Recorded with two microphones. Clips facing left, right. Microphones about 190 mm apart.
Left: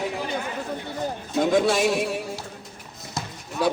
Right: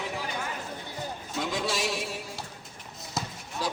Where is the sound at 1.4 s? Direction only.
50° left (ahead or behind).